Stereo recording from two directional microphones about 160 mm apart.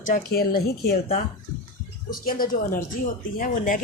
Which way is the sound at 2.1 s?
60° left (ahead or behind).